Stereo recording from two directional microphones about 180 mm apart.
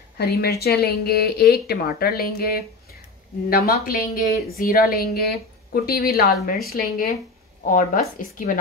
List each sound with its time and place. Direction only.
0.2 s a woman's voice: 60° left (ahead or behind)